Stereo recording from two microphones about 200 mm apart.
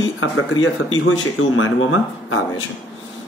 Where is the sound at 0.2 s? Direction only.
80° left.